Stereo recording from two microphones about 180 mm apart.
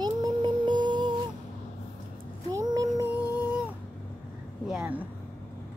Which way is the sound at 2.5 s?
20° right (ahead or behind).